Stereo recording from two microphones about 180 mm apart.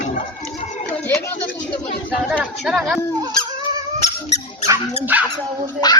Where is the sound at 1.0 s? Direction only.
10° left (ahead or behind).